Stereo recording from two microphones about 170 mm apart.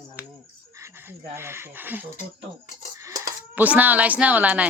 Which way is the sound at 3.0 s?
20° right (ahead or behind).